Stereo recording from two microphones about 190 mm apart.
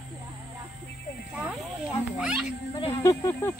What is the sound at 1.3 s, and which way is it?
Speech, 5° right (ahead or behind).